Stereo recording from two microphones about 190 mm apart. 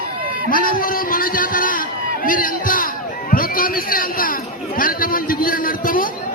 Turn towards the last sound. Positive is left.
turn(degrees=50)  # may be behind; listen again after turning